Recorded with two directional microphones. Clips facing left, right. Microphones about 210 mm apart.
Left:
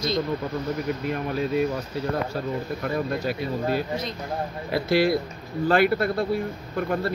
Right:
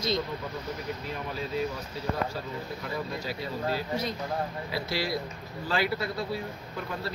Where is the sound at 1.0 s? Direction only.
60° left (ahead or behind).